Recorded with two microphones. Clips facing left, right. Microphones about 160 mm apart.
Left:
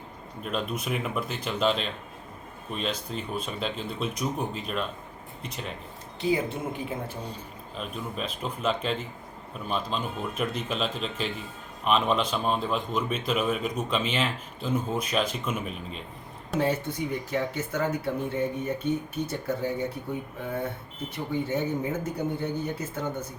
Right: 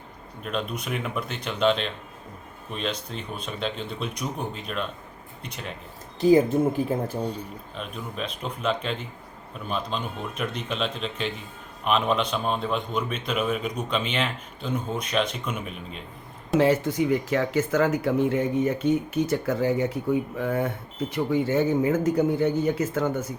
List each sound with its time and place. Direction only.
0.4 s a man's voice: centre (ahead or behind)
6.1 s speech: 40° right (ahead or behind)
7.8 s a man's voice: centre (ahead or behind)
16.6 s speech: 90° right